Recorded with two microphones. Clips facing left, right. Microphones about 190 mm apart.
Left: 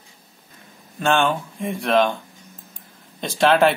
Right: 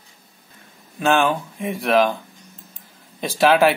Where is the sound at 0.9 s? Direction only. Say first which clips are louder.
Right 1 dB; 5° right (ahead or behind).